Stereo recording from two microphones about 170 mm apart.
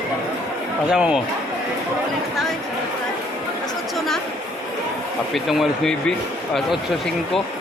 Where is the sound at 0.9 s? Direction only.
5° right (ahead or behind).